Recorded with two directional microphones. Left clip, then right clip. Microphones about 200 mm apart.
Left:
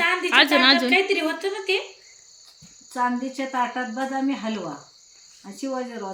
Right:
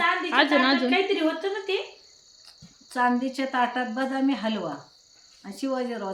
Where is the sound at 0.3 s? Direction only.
5° left (ahead or behind).